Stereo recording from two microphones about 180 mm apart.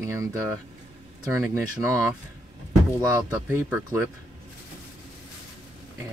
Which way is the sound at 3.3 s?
10° right (ahead or behind).